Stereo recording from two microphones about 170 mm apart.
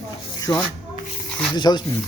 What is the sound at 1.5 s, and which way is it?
Speech, 25° left (ahead or behind).